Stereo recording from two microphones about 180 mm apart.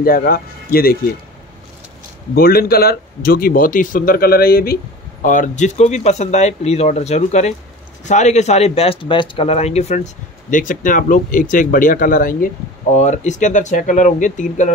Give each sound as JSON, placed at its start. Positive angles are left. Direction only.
{"t": 0.0, "sound": "speech", "side_deg": 55}
{"t": 2.3, "sound": "speech", "side_deg": 55}
{"t": 5.2, "sound": "speech", "side_deg": 45}